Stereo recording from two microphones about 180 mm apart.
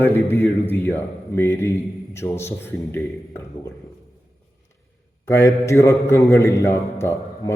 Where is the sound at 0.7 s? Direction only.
15° left (ahead or behind).